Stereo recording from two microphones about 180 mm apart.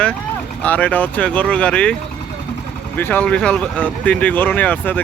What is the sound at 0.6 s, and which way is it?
Speech, 10° left (ahead or behind).